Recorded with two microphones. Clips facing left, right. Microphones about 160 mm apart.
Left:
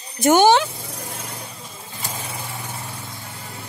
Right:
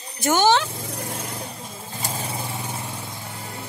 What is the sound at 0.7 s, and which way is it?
Vehicle, 50° right (ahead or behind).